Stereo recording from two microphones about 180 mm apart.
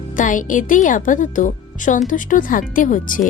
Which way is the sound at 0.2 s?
45° left (ahead or behind).